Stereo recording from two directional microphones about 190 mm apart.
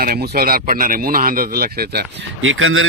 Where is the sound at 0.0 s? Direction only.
50° right (ahead or behind).